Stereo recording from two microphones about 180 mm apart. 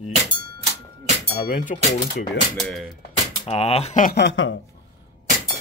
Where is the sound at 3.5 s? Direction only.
35° left (ahead or behind).